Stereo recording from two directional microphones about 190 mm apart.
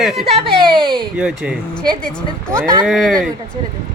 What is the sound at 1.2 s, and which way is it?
Speech, 5° right (ahead or behind).